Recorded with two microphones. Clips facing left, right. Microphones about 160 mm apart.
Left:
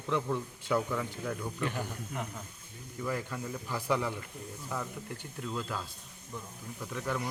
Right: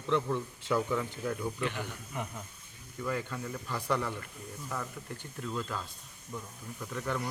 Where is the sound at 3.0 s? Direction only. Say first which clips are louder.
Even; 5° left (ahead or behind).